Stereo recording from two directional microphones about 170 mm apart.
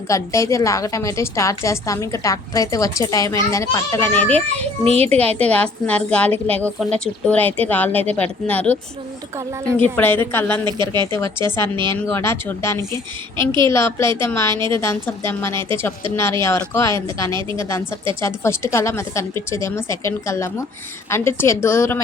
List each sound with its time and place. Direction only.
0.1 s a woman's voice: 15° left (ahead or behind)
4.9 s a child's voice: 35° right (ahead or behind)
5.4 s a woman's voice: 10° left (ahead or behind)
10.7 s speech: 25° right (ahead or behind)
11.9 s a woman's voice: 15° left (ahead or behind)
14.5 s speech: 25° right (ahead or behind)
14.8 s a woman's voice: 15° left (ahead or behind)